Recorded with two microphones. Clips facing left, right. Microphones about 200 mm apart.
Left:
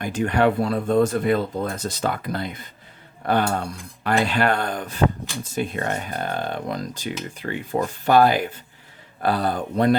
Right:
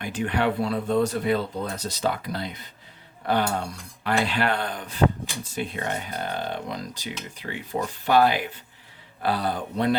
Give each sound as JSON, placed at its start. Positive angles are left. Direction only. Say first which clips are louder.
{"t": 0.0, "sound": "speech", "louder": "left 5 dB", "side_deg": 45}